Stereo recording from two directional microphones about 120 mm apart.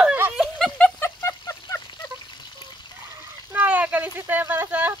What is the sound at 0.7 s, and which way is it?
Vehicle, 15° left (ahead or behind).